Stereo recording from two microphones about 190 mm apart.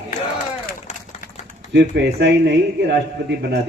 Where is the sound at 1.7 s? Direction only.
65° right (ahead or behind).